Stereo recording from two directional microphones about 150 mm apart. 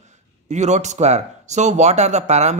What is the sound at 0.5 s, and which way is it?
A man's voice, 50° right (ahead or behind).